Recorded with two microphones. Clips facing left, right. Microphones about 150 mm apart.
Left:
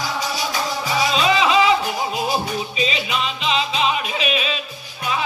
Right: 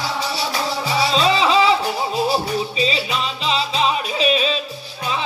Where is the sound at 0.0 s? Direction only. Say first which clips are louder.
Right 1 dB; 30° right (ahead or behind).